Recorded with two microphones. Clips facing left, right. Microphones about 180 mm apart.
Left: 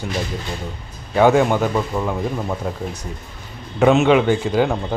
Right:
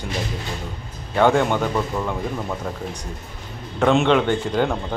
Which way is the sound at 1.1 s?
5° left (ahead or behind).